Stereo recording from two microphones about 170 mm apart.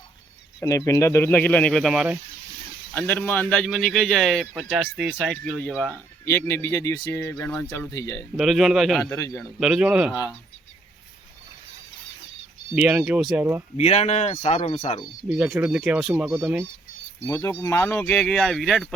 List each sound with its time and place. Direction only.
0.6 s speech: 20° left (ahead or behind); by 2.1 s centre (ahead or behind)
2.9 s speech: 10° left (ahead or behind)
8.4 s a man's voice: centre (ahead or behind)
9.0 s speech: 15° left (ahead or behind)
9.6 s a man's voice: 5° right (ahead or behind)
12.7 s speech: 5° right (ahead or behind)
13.7 s speech: 40° left (ahead or behind)
15.3 s speech: 5° right (ahead or behind)
17.2 s speech: 15° left (ahead or behind)